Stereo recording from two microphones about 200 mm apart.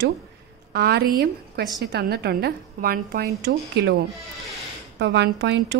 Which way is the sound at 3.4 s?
60° right (ahead or behind).